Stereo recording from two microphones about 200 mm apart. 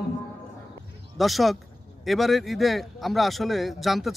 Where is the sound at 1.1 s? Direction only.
Centre (ahead or behind).